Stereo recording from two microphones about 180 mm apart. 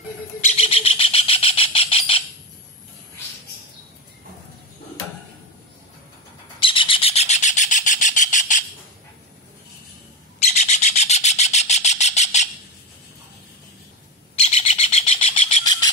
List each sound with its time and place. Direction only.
0.4 s bird: 35° left (ahead or behind)
6.6 s bird: 30° left (ahead or behind); by 8.6 s 45° left (ahead or behind)
10.4 s bird: 40° left (ahead or behind)
14.4 s bird: 35° left (ahead or behind)